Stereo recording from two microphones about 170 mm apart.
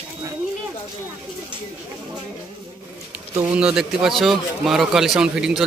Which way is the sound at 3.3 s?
20° right (ahead or behind).